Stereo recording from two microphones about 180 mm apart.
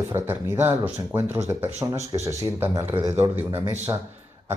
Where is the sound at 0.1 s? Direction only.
15° right (ahead or behind).